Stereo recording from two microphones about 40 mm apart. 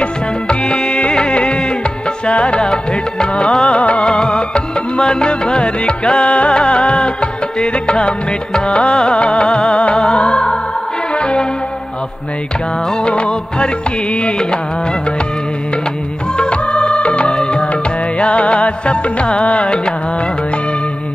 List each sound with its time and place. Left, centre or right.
0.0 s music: left
13.0 s music: left
16.3 s music: left